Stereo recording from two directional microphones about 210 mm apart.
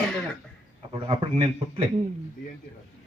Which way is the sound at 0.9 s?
25° right (ahead or behind).